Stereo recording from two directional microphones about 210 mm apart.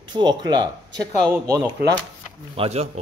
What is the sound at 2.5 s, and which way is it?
Speech, 30° right (ahead or behind).